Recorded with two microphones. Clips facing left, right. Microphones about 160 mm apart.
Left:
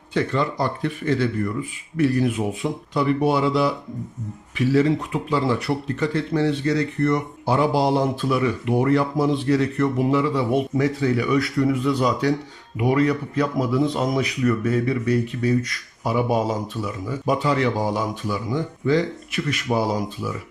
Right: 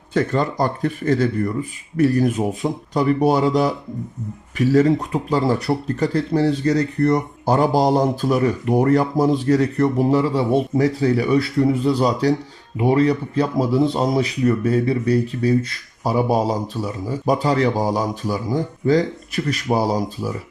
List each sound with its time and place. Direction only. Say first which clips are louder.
0.1 s speech: right 3 dB; 45° right (ahead or behind)